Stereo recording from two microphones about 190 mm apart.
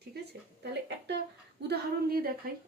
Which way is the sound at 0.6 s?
60° right (ahead or behind).